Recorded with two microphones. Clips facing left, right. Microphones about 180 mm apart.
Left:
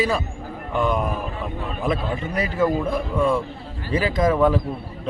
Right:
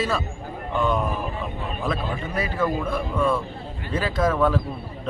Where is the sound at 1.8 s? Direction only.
15° left (ahead or behind).